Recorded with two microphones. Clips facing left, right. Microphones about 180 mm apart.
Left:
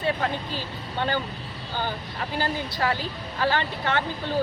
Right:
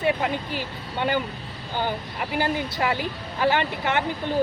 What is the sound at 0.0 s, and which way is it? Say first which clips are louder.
Speech: right 2 dB; 15° right (ahead or behind).